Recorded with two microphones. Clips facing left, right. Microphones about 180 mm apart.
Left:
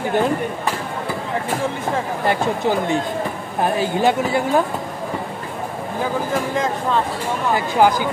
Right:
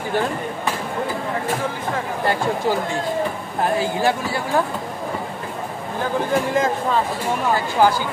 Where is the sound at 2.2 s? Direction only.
20° left (ahead or behind).